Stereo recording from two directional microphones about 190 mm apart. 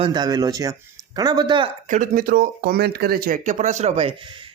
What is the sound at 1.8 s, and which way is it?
Speech, 45° right (ahead or behind).